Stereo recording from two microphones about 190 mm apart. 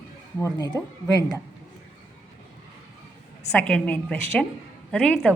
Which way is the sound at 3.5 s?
5° left (ahead or behind).